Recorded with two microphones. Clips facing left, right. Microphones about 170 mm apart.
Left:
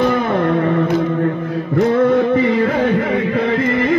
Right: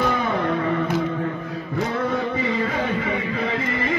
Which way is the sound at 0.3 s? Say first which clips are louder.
Left 7 dB; 55° left (ahead or behind).